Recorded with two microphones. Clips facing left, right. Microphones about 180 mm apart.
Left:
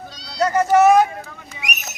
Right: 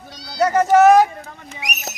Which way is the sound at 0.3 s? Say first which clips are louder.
Right 2 dB; 20° right (ahead or behind).